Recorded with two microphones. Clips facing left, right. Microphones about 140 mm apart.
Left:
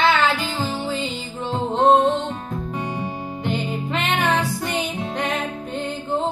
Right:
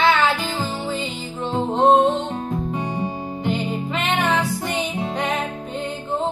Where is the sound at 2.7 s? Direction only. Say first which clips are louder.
Right 2 dB; 25° right (ahead or behind).